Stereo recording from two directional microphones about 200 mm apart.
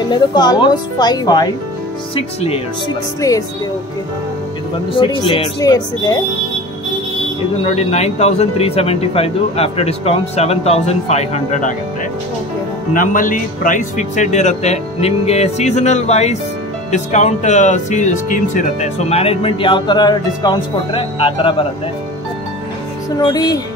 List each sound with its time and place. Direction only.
0.1 s speech: 20° left (ahead or behind)
3.2 s speech: 15° left (ahead or behind)
4.9 s speech: 25° left (ahead or behind)
7.7 s speech: 30° left (ahead or behind)
12.9 s speech: 40° left (ahead or behind); by 21.6 s 25° left (ahead or behind)
23.1 s speech: 20° left (ahead or behind)